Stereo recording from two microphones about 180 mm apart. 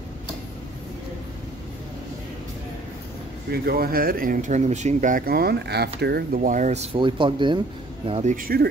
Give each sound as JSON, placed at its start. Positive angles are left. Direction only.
{"t": 3.5, "sound": "speech", "side_deg": -55}
{"t": 8.1, "sound": "speech", "side_deg": -40}